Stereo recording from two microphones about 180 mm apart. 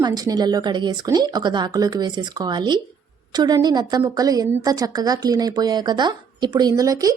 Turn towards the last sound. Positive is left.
turn(degrees=-20)  # may be behind; listen again after turning